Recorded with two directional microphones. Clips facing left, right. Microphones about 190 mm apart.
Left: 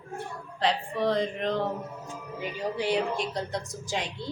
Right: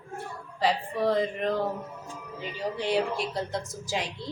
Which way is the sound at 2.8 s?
Centre (ahead or behind).